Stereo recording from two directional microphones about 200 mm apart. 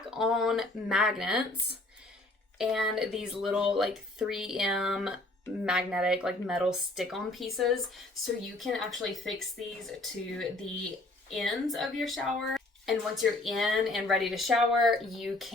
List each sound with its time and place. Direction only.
0.1 s speech: centre (ahead or behind)
2.6 s speech: centre (ahead or behind)